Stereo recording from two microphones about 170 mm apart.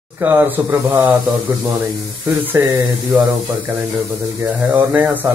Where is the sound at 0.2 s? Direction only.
10° right (ahead or behind).